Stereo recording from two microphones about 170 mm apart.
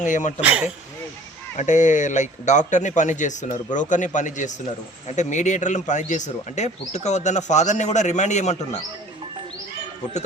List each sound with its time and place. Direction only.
0.0 s speech: 45° left (ahead or behind)
0.4 s speech: 5° right (ahead or behind)
1.5 s speech: 45° left (ahead or behind)